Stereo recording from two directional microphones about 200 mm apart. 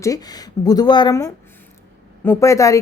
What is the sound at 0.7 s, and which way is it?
A woman's voice, 20° left (ahead or behind).